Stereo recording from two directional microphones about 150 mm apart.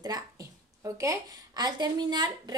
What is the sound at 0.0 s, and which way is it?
A woman's voice, 25° right (ahead or behind).